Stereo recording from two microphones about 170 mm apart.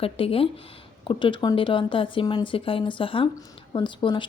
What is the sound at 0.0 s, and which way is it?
Speech, 35° left (ahead or behind).